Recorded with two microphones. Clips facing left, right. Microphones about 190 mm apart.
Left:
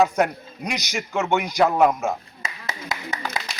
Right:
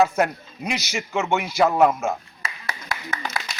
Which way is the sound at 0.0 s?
Centre (ahead or behind).